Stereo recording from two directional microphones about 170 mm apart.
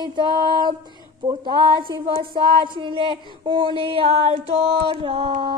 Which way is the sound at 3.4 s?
30° right (ahead or behind).